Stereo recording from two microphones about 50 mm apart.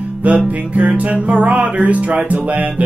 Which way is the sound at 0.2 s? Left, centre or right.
Right.